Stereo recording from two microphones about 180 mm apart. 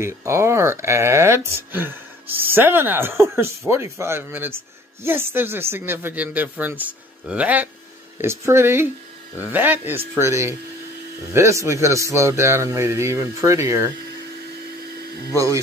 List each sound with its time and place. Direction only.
0.0 s speech: 15° right (ahead or behind)
15.3 s speech: 20° right (ahead or behind)